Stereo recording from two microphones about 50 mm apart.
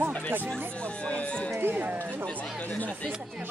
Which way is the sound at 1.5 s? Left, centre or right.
Right.